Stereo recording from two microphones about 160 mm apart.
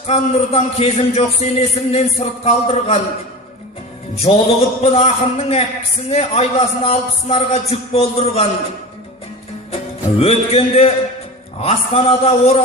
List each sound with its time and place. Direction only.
0.1 s a man's voice: 40° left (ahead or behind)
4.3 s a man's voice: 35° left (ahead or behind)
9.7 s music: 40° left (ahead or behind)
11.6 s a man's voice: 40° left (ahead or behind)